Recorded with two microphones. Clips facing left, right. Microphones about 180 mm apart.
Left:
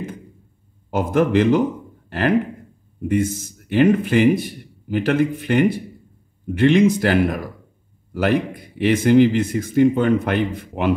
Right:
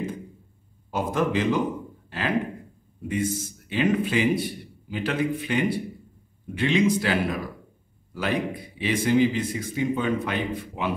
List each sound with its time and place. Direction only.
0.8 s a man's voice: 60° left (ahead or behind)